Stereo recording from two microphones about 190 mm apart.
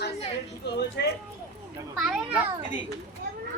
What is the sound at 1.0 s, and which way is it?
Speech, 60° left (ahead or behind).